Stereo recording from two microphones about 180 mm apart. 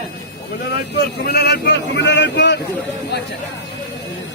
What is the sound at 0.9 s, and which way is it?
Speech, 65° left (ahead or behind).